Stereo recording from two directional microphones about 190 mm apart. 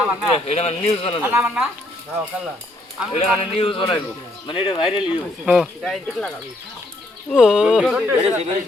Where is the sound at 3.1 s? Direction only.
30° left (ahead or behind).